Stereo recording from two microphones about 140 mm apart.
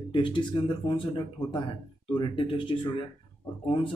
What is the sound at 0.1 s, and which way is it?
Speech, 35° left (ahead or behind).